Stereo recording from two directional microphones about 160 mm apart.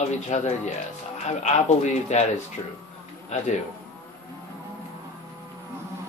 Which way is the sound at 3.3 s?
45° left (ahead or behind).